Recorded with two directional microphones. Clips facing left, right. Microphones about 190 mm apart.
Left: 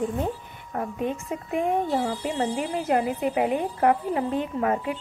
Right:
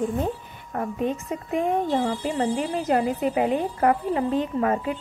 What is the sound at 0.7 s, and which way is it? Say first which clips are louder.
Speech: right 2 dB; 10° left (ahead or behind).